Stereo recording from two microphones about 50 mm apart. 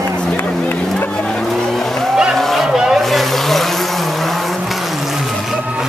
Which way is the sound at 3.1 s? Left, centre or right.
Centre.